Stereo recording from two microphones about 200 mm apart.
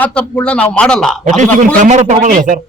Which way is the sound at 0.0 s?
5° left (ahead or behind).